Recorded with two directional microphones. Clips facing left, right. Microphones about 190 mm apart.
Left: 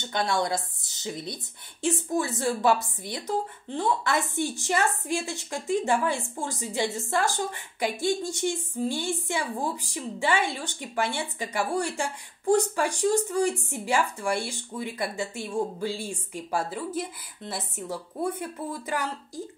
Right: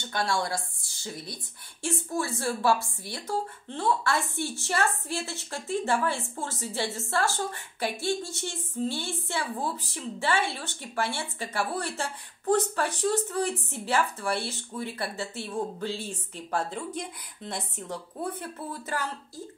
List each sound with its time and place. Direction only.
0.0 s a woman's voice: 20° left (ahead or behind)